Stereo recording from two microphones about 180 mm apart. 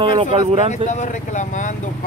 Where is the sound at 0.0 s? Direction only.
30° right (ahead or behind).